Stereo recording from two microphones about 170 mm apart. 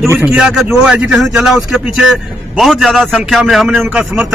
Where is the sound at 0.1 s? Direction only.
10° right (ahead or behind).